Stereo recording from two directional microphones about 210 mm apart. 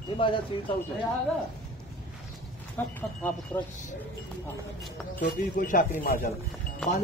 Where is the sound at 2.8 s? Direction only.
10° left (ahead or behind).